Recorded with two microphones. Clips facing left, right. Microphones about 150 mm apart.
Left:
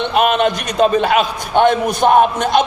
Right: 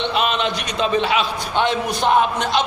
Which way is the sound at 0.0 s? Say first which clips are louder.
Left 6 dB; 50° left (ahead or behind).